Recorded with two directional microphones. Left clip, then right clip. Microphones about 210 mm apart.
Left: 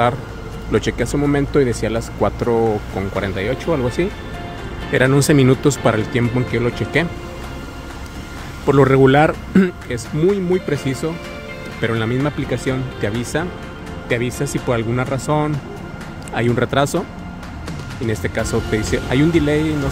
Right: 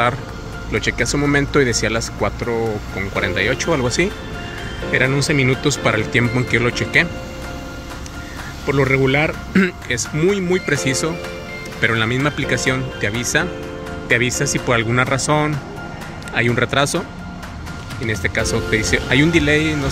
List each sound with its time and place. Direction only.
0.7 s speech: 25° left (ahead or behind)
0.9 s speech: 10° left (ahead or behind)
4.9 s speech: 25° left (ahead or behind)
6.1 s speech: 5° left (ahead or behind)
8.6 s speech: 30° left (ahead or behind)
9.5 s speech: 15° left (ahead or behind)
14.0 s speech: centre (ahead or behind)
18.0 s speech: 15° left (ahead or behind)